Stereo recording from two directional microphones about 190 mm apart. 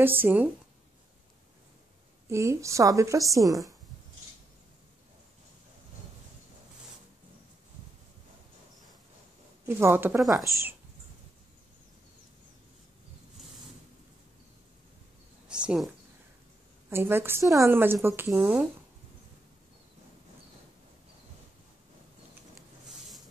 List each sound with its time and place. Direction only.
0.0 s a woman's voice: 10° right (ahead or behind)
2.2 s a woman's voice: 15° right (ahead or behind)
9.7 s a woman's voice: 10° right (ahead or behind)
15.4 s a sound: 5° right (ahead or behind)
16.9 s a woman's voice: 10° right (ahead or behind)